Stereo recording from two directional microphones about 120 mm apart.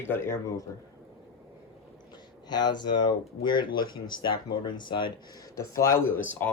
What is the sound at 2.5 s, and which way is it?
Speech, 40° left (ahead or behind).